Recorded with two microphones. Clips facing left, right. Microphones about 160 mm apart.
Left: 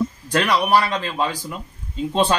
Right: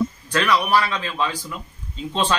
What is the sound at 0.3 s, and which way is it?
Speech, 40° left (ahead or behind).